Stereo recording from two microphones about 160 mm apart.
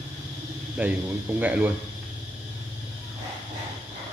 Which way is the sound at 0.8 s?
10° right (ahead or behind).